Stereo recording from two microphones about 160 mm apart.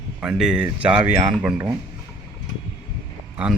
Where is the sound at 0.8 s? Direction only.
10° right (ahead or behind).